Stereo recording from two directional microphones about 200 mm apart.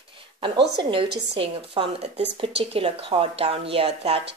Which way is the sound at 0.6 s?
60° right (ahead or behind).